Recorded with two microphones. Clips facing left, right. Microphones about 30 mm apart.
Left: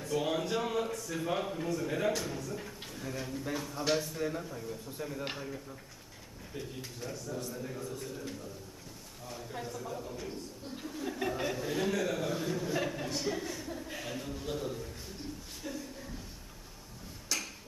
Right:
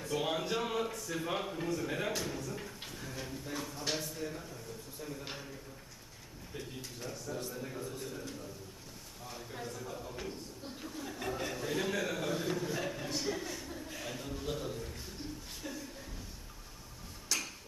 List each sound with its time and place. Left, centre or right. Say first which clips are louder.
0.0 s a man's voice: left 2 dB; centre
4.2 s speech: left 6 dB; centre
6.5 s a man's voice: left 2 dB; centre
9.2 s a man's voice: left 2 dB; centre
14.0 s a sound: left 1 dB; centre
17.2 s tick-tock: even; centre